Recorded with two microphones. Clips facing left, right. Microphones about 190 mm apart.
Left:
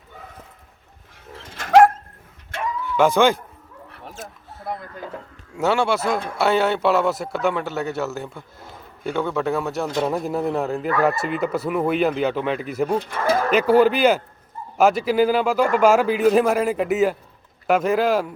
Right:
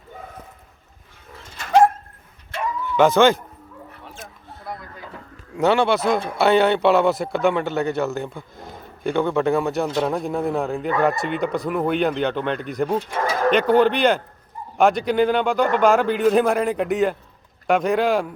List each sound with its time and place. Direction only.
1.5 s dog: 75° left (ahead or behind)
3.0 s a man's voice: 10° left (ahead or behind)
4.1 s a sound: 45° left (ahead or behind)
5.5 s a man's voice: centre (ahead or behind)